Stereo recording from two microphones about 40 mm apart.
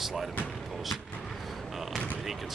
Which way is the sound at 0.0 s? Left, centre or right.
Centre.